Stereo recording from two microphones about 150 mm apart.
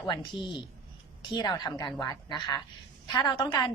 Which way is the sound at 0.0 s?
30° left (ahead or behind).